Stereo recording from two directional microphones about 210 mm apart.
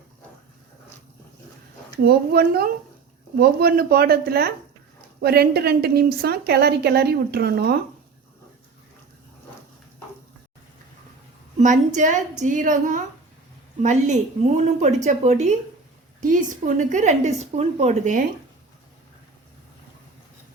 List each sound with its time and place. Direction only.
2.0 s a woman's voice: 45° right (ahead or behind)
11.5 s a woman's voice: 35° right (ahead or behind)